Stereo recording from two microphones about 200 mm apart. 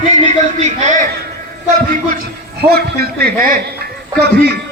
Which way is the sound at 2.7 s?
50° right (ahead or behind).